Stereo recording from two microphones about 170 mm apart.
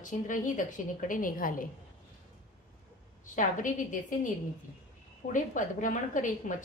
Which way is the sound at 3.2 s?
50° left (ahead or behind).